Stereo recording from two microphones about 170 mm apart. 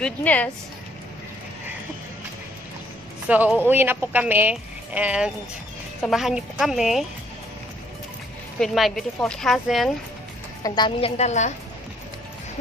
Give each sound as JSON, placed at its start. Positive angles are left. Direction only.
{"t": 0.0, "sound": "speech", "side_deg": 10}
{"t": 3.3, "sound": "a woman's voice", "side_deg": -10}
{"t": 8.5, "sound": "speech", "side_deg": 0}
{"t": 10.6, "sound": "a woman's voice", "side_deg": 25}